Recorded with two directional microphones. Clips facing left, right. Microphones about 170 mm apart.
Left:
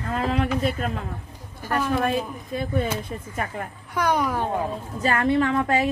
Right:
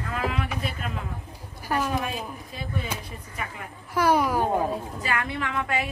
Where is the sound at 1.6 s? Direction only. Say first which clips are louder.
Left 1 dB; 10° right (ahead or behind).